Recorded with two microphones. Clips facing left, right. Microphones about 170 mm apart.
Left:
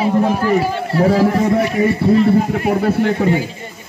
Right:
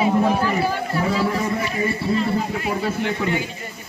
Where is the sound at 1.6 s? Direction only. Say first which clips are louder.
Left 8 dB; 70° left (ahead or behind); by 3.5 s 35° left (ahead or behind).